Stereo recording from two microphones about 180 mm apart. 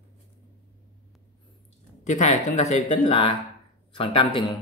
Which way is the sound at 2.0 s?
40° left (ahead or behind).